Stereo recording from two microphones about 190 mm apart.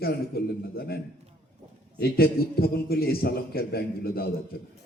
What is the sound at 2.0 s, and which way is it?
A man's voice, 55° left (ahead or behind).